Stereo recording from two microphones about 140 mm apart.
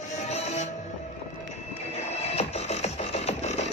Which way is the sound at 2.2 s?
50° left (ahead or behind).